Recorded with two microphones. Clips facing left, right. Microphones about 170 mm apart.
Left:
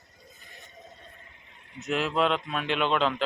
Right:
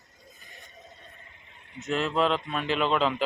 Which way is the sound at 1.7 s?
Centre (ahead or behind).